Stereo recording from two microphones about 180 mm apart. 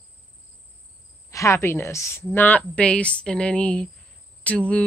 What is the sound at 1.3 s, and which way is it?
Speech, 15° left (ahead or behind).